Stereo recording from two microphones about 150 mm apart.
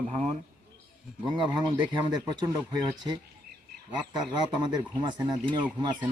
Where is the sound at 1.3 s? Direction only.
30° right (ahead or behind).